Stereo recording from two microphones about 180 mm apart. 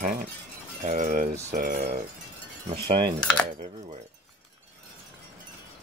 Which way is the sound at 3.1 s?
5° left (ahead or behind).